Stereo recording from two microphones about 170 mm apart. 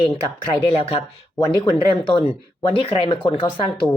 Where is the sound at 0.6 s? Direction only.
35° left (ahead or behind).